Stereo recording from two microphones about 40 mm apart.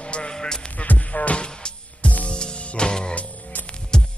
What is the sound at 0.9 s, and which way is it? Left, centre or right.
Music, left.